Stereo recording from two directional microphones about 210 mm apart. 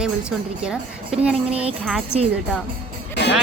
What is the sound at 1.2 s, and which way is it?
Speech, 5° right (ahead or behind).